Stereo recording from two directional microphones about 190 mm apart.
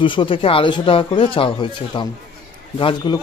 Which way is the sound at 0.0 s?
25° left (ahead or behind).